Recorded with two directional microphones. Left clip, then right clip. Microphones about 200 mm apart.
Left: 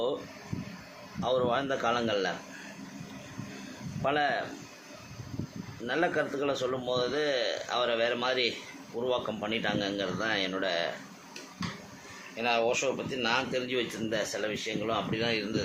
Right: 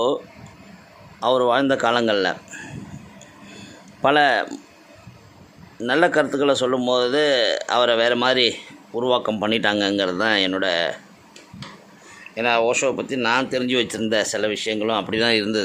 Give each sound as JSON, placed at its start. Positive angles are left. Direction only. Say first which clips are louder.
{"t": 1.2, "sound": "speech", "louder": "right 10 dB", "side_deg": -60}
{"t": 4.0, "sound": "speech", "louder": "right 12 dB", "side_deg": -55}
{"t": 5.8, "sound": "speech", "louder": "right 11 dB", "side_deg": -55}
{"t": 12.4, "sound": "speech", "louder": "right 9 dB", "side_deg": -55}